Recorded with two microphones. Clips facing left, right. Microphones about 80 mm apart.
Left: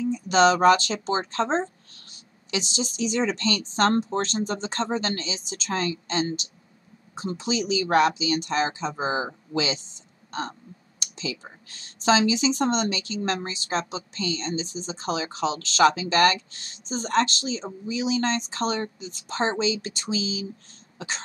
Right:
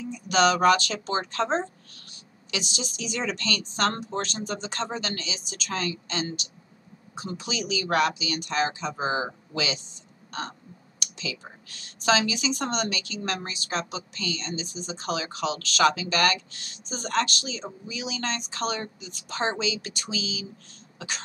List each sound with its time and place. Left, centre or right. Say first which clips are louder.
0.0 s a woman's voice: left 3 dB; left
11.0 s speech: left 3 dB; left